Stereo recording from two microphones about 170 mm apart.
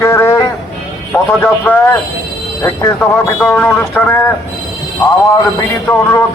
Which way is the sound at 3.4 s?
10° left (ahead or behind).